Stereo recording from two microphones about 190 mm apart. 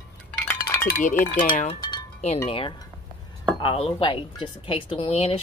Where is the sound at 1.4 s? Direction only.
45° left (ahead or behind).